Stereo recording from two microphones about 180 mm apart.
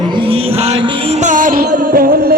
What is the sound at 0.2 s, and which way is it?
Music, 30° right (ahead or behind).